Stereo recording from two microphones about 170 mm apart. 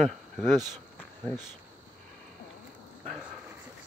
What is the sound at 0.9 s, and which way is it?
Insect, 5° left (ahead or behind).